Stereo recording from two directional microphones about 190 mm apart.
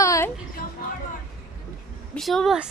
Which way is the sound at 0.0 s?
15° left (ahead or behind).